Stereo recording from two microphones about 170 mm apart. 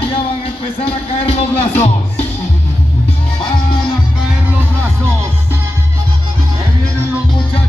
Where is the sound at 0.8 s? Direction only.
35° left (ahead or behind).